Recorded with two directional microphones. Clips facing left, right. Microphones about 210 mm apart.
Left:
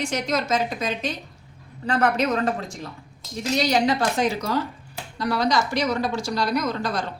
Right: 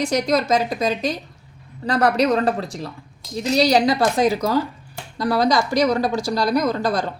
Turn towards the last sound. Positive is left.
turn(degrees=-35)  # may be behind; listen again after turning